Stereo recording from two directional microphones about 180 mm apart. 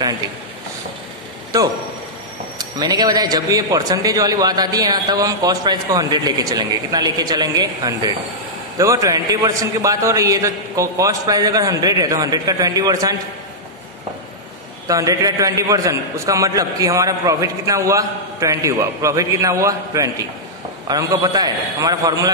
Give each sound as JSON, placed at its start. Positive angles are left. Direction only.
{"t": 2.8, "sound": "a man's voice", "side_deg": -20}
{"t": 14.9, "sound": "a man's voice", "side_deg": -20}